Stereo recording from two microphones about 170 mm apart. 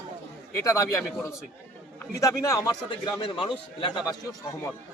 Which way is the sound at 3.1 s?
30° left (ahead or behind).